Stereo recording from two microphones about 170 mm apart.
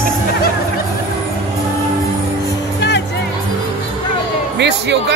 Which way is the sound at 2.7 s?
90° left.